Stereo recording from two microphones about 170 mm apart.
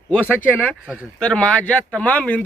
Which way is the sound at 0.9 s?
5° right (ahead or behind).